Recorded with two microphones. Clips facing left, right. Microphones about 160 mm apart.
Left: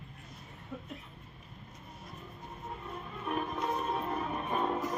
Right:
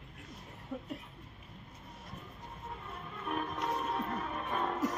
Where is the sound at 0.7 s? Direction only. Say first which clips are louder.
Right 3 dB; 10° right (ahead or behind).